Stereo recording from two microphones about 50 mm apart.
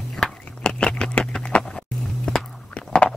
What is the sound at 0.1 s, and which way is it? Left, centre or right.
Biting, centre.